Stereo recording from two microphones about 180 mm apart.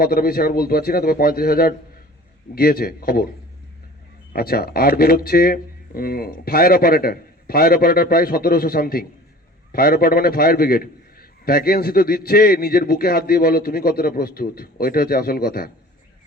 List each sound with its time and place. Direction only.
0.0 s a man's voice: 55° left (ahead or behind)
4.3 s a man's voice: 55° left (ahead or behind)